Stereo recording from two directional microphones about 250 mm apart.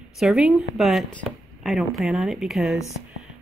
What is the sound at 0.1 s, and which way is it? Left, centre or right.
Speech, centre.